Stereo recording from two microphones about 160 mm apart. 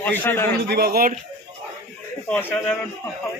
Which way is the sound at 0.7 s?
80° right.